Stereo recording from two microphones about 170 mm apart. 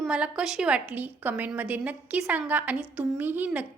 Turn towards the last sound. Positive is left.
turn(degrees=-10)  # may be behind; listen again after turning